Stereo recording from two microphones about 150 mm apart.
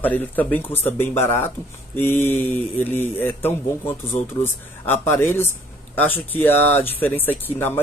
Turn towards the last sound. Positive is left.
turn(degrees=15)  # may be behind; listen again after turning